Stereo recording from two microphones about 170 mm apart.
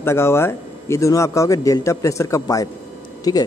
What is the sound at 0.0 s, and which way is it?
Speech, 15° left (ahead or behind).